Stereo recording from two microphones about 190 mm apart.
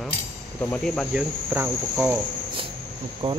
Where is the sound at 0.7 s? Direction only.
5° left (ahead or behind).